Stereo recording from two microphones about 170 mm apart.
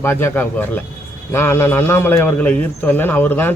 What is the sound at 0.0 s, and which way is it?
A man's voice, 15° left (ahead or behind).